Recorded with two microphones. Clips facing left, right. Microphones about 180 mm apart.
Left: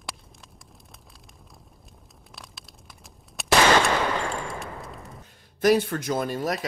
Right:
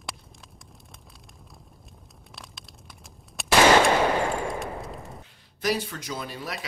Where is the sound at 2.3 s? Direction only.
Centre (ahead or behind).